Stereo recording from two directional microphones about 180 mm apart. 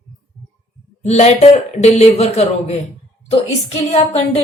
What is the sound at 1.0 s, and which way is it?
A man's voice, 40° left (ahead or behind).